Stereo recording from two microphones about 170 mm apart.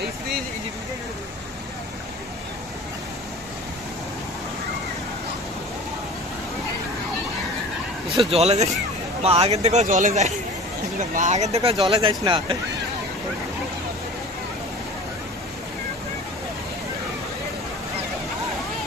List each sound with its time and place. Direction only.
8.3 s speech: 40° right (ahead or behind)
11.9 s speech: 30° right (ahead or behind)